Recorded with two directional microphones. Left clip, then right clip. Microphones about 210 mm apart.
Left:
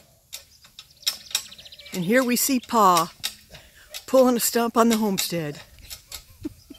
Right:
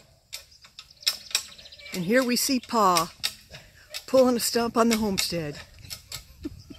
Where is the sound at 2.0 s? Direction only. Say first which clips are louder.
Left 2 dB; 15° left (ahead or behind).